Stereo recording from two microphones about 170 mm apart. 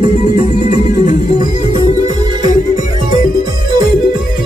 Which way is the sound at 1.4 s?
25° right (ahead or behind).